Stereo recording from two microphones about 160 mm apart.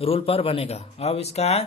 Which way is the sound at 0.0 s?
35° left (ahead or behind).